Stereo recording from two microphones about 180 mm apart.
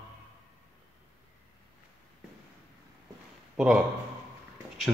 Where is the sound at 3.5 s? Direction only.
5° right (ahead or behind).